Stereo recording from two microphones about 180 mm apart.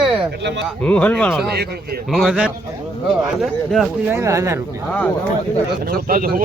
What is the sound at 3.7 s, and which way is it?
Speech, centre (ahead or behind).